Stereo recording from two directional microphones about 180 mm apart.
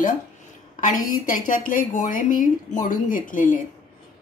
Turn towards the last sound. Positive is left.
turn(degrees=50)  # may be behind; listen again after turning